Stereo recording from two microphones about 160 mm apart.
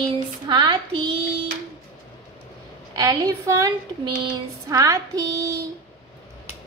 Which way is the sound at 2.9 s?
20° right (ahead or behind).